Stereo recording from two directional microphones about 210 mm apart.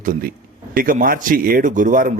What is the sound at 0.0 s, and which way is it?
A man's voice, 40° right (ahead or behind).